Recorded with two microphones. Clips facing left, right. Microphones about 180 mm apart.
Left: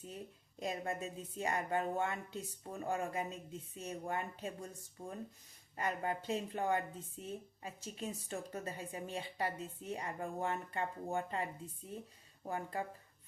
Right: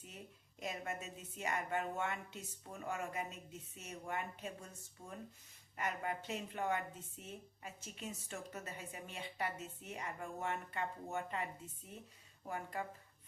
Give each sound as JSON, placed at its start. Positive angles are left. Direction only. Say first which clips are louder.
{"t": 0.6, "sound": "a woman's voice", "louder": "left 4 dB", "side_deg": 35}
{"t": 12.5, "sound": "a woman's voice", "louder": "left 3 dB", "side_deg": 35}